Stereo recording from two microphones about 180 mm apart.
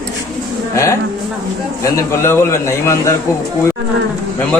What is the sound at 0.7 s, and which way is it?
Speech, 15° left (ahead or behind).